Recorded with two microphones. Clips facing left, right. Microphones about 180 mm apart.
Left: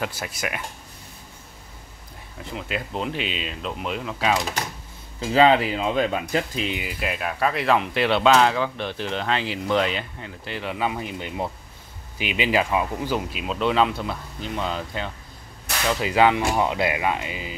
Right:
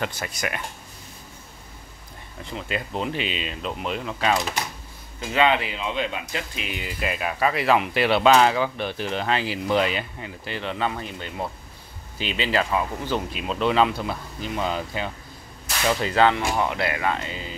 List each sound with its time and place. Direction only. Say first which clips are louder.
0.0 s speech: even; 5° left (ahead or behind)
2.5 s speech: even; centre (ahead or behind)
5.2 s speech: left 4 dB; 35° left (ahead or behind)
6.7 s speech: left 2 dB; 10° left (ahead or behind)
7.0 s speech: right 1 dB; centre (ahead or behind)
16.0 s speech: left 2 dB; 10° left (ahead or behind)